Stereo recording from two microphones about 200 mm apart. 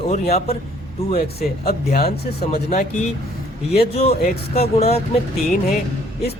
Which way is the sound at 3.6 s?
30° left (ahead or behind).